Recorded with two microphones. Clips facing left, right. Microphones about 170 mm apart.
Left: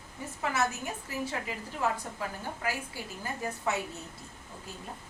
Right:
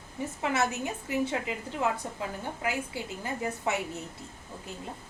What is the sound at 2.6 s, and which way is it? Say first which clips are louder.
A woman's voice: right 3 dB; 20° right (ahead or behind).